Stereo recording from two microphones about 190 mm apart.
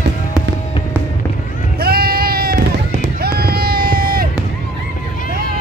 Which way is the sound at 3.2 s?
55° right (ahead or behind).